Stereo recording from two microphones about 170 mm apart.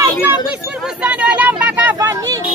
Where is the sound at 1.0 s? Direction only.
10° right (ahead or behind).